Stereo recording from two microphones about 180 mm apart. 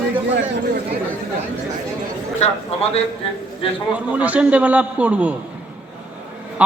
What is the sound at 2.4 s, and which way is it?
Speech, 35° left (ahead or behind).